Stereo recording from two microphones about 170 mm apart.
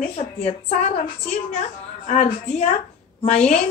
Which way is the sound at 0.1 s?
40° left (ahead or behind).